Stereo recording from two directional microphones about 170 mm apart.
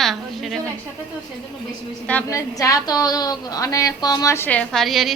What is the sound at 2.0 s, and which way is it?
A woman's voice, 10° left (ahead or behind).